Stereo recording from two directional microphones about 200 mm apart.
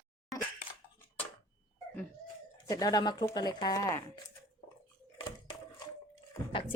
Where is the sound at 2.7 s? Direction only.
20° left (ahead or behind).